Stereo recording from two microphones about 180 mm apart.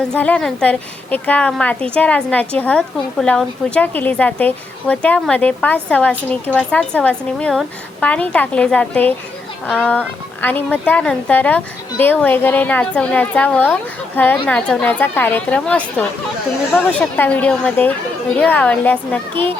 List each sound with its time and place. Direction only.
0.0 s a woman's voice: 5° left (ahead or behind)